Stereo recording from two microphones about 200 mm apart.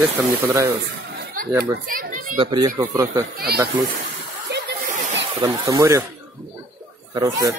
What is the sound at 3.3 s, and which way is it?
Speech, 50° right (ahead or behind).